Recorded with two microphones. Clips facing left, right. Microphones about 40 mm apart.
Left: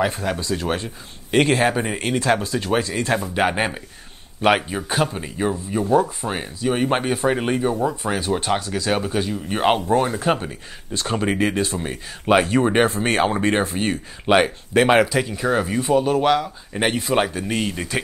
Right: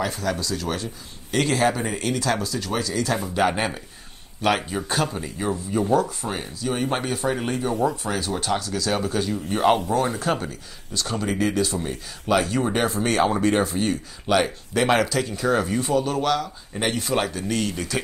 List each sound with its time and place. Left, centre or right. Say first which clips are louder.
0.0 s speech: left 3 dB; left